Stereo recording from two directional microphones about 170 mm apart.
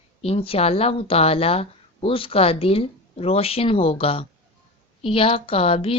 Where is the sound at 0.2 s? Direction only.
35° left (ahead or behind).